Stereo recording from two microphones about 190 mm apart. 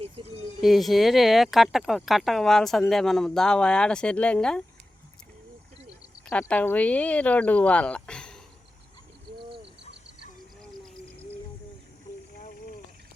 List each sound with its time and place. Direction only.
0.2 s a sound: 25° right (ahead or behind)
0.6 s speech: centre (ahead or behind)
6.2 s speech: 5° left (ahead or behind)